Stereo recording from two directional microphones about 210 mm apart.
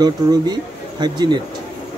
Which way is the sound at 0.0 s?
20° right (ahead or behind).